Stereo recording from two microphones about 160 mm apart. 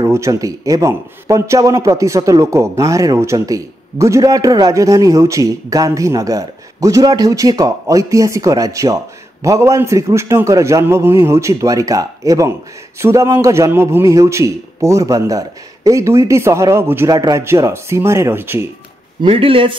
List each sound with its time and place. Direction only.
0.0 s a man's voice: 20° right (ahead or behind)
19.2 s speech: 35° right (ahead or behind)